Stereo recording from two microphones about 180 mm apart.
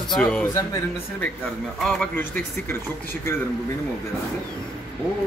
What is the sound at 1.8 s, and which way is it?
A man's voice, centre (ahead or behind).